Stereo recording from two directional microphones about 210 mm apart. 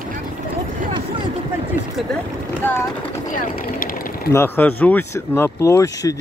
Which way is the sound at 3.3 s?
40° left (ahead or behind).